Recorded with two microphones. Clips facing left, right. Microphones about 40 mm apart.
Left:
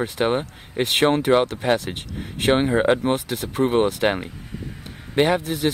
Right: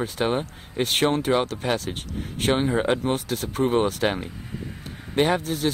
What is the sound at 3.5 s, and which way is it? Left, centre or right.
Speech, left.